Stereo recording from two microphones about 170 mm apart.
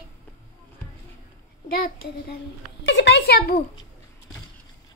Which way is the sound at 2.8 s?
90° left.